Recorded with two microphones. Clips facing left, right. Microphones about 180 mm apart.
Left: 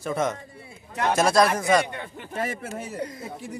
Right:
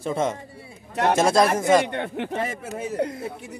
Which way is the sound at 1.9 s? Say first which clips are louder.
Right 8 dB; 70° right (ahead or behind).